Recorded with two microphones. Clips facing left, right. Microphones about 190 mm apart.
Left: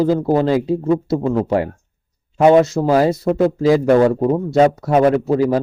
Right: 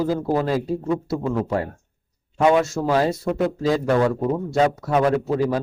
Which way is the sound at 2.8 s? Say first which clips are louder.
Left 5 dB; 30° left (ahead or behind).